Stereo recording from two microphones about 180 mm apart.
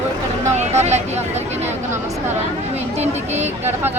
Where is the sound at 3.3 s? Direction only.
40° right (ahead or behind).